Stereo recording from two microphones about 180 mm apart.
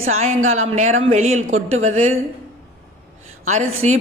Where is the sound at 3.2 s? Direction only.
40° right (ahead or behind).